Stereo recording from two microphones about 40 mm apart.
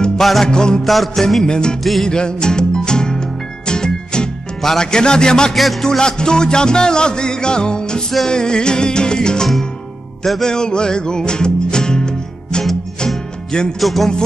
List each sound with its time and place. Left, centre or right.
0.2 s music: centre
0.5 s music: centre
0.8 s music: centre
1.4 s music: centre
1.8 s music: centre
2.0 s music: left
5.5 s music: centre
5.9 s music: centre
13.7 s music: centre